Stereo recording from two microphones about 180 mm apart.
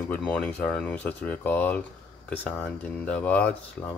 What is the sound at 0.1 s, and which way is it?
Speech, 5° left (ahead or behind).